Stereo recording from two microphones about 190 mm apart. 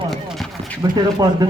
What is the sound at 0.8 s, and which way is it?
Speech, 20° right (ahead or behind).